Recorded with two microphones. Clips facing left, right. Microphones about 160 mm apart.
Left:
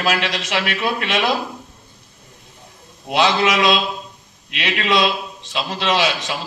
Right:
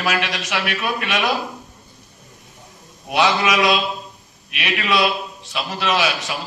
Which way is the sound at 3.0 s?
25° left (ahead or behind).